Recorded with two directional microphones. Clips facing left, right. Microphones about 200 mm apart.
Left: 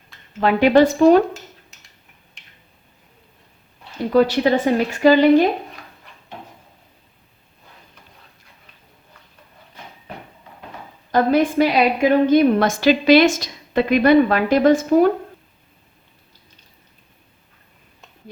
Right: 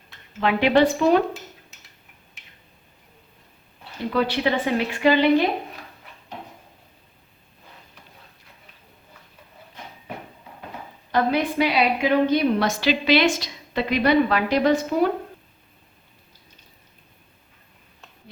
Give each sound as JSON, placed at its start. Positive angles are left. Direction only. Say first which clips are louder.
{"t": 0.3, "sound": "a woman's voice", "louder": "left 5 dB", "side_deg": 40}
{"t": 4.1, "sound": "a woman's voice", "louder": "left 7 dB", "side_deg": 40}
{"t": 11.1, "sound": "a woman's voice", "louder": "left 5 dB", "side_deg": 45}